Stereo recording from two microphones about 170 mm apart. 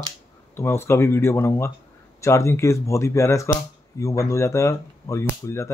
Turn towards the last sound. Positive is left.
turn(degrees=15)  # may be behind; listen again after turning